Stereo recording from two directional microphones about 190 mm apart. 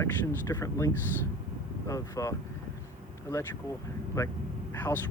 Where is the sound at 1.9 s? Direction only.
15° left (ahead or behind).